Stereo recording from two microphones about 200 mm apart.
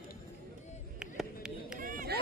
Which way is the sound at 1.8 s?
45° right (ahead or behind).